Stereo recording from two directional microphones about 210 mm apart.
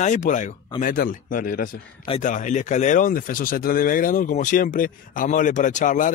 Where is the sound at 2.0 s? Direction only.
30° left (ahead or behind).